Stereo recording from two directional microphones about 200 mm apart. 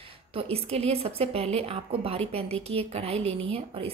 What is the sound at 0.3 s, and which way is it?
Speech, 30° right (ahead or behind).